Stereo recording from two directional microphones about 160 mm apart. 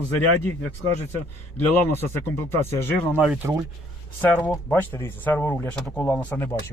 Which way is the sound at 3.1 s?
10° right (ahead or behind).